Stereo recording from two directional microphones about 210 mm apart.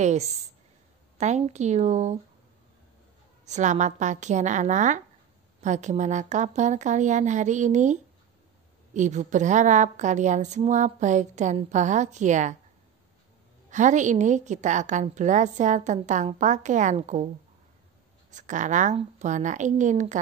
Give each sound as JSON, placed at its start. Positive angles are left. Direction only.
{"t": 0.0, "sound": "a woman's voice", "side_deg": -35}
{"t": 3.4, "sound": "a woman's voice", "side_deg": -35}
{"t": 13.7, "sound": "a woman's voice", "side_deg": -35}
{"t": 18.3, "sound": "a woman's voice", "side_deg": -35}